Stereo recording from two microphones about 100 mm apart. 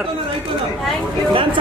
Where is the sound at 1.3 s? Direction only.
60° right (ahead or behind).